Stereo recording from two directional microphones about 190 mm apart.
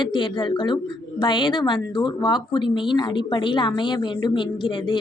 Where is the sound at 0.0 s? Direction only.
25° left (ahead or behind).